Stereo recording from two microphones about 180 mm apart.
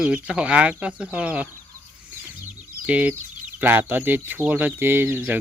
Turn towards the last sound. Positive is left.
turn(degrees=-10)  # may be behind; listen again after turning